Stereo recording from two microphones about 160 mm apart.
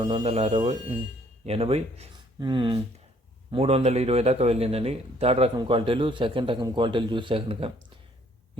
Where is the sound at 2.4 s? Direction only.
30° right (ahead or behind).